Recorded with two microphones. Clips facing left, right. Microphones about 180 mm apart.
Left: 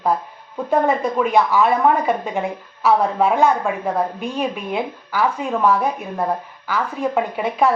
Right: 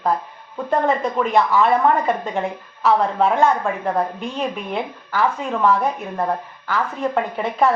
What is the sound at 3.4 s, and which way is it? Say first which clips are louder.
Speech: left 1 dB; centre (ahead or behind).